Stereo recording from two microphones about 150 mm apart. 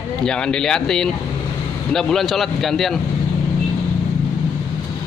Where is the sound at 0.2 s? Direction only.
5° left (ahead or behind).